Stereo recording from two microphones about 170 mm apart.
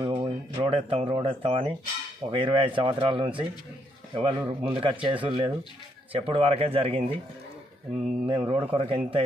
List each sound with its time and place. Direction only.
0.0 s a sound: 30° right (ahead or behind)
2.2 s speech: 30° right (ahead or behind)
8.3 s speech: 30° right (ahead or behind)